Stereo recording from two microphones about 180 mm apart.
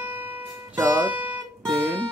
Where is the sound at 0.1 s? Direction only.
10° right (ahead or behind).